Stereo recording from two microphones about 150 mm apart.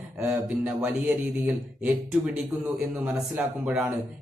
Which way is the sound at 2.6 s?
10° right (ahead or behind).